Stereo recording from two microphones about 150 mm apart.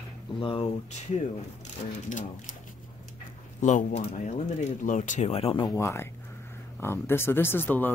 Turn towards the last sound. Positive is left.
turn(degrees=10)  # may be behind; listen again after turning